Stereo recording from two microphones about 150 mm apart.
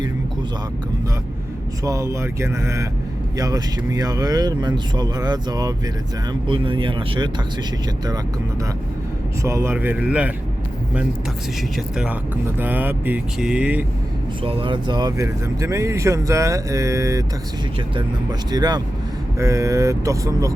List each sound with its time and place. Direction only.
1.8 s speech: 20° right (ahead or behind)
9.4 s speech: 20° right (ahead or behind)
11.9 s speech: 10° right (ahead or behind)
14.4 s speech: 35° right (ahead or behind)